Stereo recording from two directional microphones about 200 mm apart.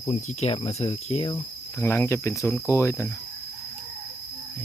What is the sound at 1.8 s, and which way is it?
Cricket, 10° left (ahead or behind).